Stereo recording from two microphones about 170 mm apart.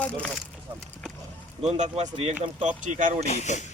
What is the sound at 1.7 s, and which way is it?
Speech, 40° right (ahead or behind).